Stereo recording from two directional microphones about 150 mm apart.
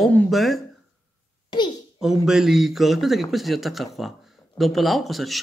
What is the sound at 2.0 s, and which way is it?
Speech, 5° right (ahead or behind).